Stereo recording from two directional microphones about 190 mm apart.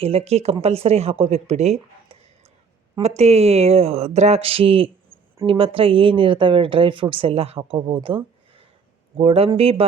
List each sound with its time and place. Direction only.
0.0 s speech: 30° right (ahead or behind)